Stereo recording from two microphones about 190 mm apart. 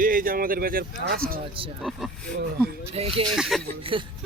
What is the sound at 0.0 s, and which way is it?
Speech, 45° right (ahead or behind).